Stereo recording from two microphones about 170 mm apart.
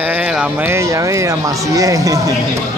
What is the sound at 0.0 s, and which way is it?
Speech, 10° right (ahead or behind).